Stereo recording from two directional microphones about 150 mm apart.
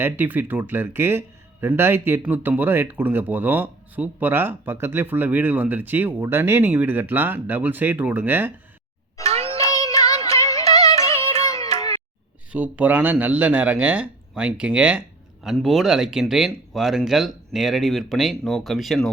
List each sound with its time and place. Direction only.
0.0 s speech: 10° right (ahead or behind)
9.3 s music: 40° right (ahead or behind)
9.6 s child singing: 25° left (ahead or behind)
10.2 s music: 20° left (ahead or behind)
11.2 s music: 45° right (ahead or behind)
12.5 s speech: 10° right (ahead or behind)